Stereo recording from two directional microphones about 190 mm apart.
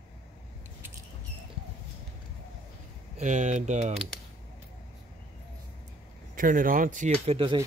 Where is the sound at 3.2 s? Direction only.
40° right (ahead or behind).